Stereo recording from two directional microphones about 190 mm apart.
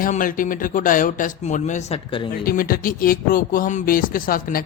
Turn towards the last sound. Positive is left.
turn(degrees=50)  # may be behind; listen again after turning